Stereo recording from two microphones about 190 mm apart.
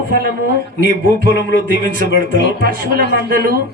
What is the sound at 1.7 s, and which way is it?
A man's voice, 50° right (ahead or behind).